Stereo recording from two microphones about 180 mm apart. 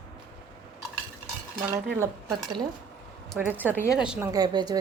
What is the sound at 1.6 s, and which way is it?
Speech, 15° right (ahead or behind).